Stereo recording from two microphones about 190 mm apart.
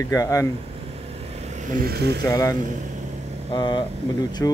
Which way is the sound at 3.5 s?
25° left (ahead or behind).